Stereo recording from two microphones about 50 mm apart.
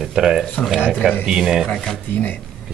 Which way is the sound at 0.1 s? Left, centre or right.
Centre.